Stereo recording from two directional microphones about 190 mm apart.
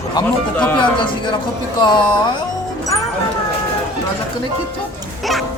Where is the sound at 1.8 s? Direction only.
25° left (ahead or behind).